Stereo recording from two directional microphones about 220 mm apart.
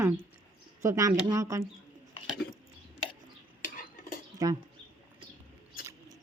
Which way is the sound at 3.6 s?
40° left (ahead or behind).